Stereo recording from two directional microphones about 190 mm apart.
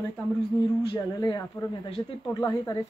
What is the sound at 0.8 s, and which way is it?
Speech, 20° left (ahead or behind).